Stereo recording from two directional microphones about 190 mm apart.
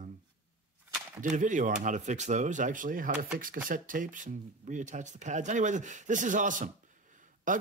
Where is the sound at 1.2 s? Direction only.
40° right (ahead or behind).